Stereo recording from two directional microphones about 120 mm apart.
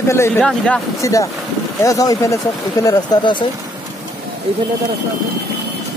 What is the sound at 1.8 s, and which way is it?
Speech, 30° left (ahead or behind).